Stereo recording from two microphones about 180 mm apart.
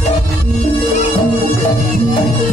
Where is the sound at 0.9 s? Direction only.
40° left (ahead or behind).